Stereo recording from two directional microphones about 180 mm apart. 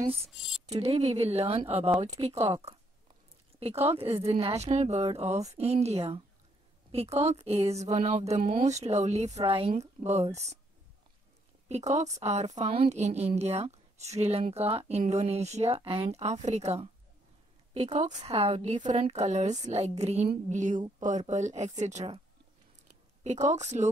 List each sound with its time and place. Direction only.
0.7 s a woman's voice: 35° right (ahead or behind)
11.7 s a woman's voice: 40° right (ahead or behind)
22.8 s a sound: 40° right (ahead or behind)